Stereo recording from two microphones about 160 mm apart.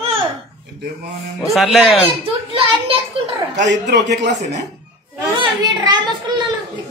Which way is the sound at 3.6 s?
50° right (ahead or behind).